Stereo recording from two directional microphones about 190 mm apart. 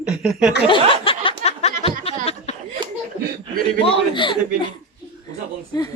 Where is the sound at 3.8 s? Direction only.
25° left (ahead or behind).